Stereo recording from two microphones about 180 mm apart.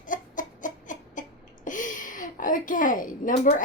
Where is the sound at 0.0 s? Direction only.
45° left (ahead or behind).